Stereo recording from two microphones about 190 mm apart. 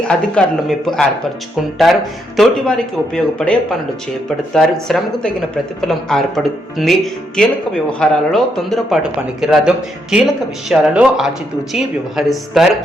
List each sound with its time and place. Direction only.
0.1 s speech: 5° left (ahead or behind)